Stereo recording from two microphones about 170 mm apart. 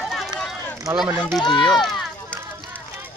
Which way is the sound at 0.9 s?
10° right (ahead or behind).